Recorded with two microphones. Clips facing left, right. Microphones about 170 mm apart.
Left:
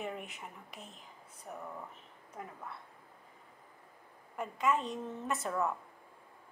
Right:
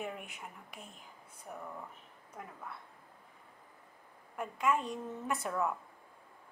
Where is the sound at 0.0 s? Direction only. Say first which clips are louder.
Left 1 dB; centre (ahead or behind).